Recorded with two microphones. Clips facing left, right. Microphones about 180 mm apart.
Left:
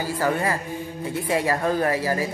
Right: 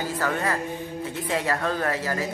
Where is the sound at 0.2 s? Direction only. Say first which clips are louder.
Left 3 dB; 10° left (ahead or behind).